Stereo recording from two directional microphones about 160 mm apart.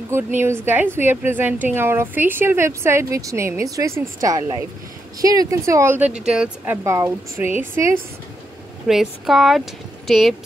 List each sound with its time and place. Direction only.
0.1 s a woman's voice: 15° right (ahead or behind)
8.8 s speech: centre (ahead or behind)